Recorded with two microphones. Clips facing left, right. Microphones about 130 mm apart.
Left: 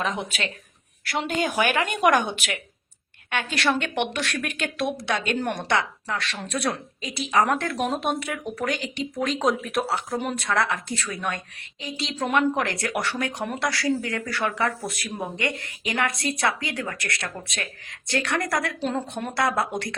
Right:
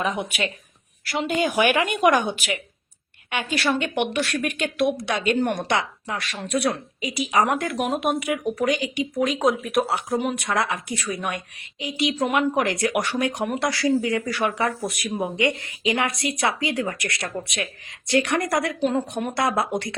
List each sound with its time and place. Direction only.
0.0 s speech: 15° right (ahead or behind)
1.1 s a woman's voice: centre (ahead or behind)
2.0 s a woman's voice: centre (ahead or behind)
3.5 s a woman's voice: centre (ahead or behind)
5.6 s speech: 15° right (ahead or behind)
8.2 s speech: 15° right (ahead or behind)